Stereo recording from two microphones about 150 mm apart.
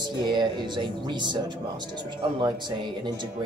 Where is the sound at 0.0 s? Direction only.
30° right (ahead or behind).